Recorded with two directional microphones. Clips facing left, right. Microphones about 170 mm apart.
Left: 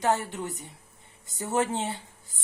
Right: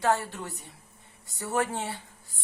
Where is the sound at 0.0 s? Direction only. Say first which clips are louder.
Even; 20° left (ahead or behind).